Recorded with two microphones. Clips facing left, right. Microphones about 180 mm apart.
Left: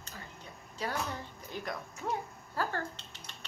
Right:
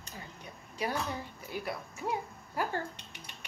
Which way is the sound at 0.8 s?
15° right (ahead or behind).